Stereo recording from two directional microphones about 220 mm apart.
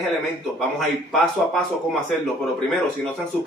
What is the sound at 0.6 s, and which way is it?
Speech, centre (ahead or behind).